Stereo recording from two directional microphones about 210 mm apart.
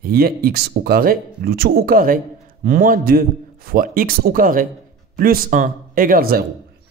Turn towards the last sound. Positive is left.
turn(degrees=-45)  # may be behind; listen again after turning